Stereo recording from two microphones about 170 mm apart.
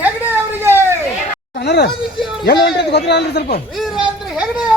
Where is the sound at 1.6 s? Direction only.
75° left (ahead or behind).